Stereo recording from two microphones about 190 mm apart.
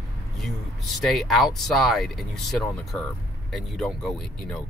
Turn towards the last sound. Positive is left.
turn(degrees=0)  # may be behind; listen again after turning